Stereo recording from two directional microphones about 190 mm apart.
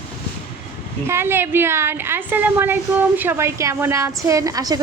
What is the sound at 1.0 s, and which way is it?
A woman's voice, 15° right (ahead or behind).